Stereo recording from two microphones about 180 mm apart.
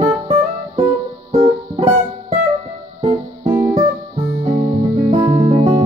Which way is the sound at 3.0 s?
30° right (ahead or behind).